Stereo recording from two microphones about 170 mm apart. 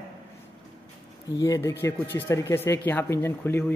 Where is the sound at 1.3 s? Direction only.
20° left (ahead or behind).